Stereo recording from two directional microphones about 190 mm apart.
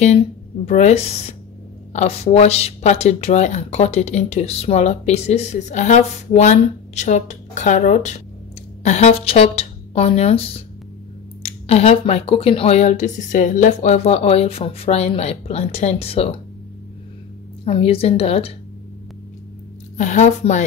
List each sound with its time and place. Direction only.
0.7 s speech: 35° left (ahead or behind)
17.6 s speech: 30° left (ahead or behind)
20.0 s speech: 40° left (ahead or behind)